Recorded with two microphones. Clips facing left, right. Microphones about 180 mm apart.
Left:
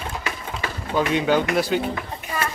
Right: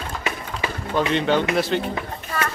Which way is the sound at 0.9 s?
5° left (ahead or behind).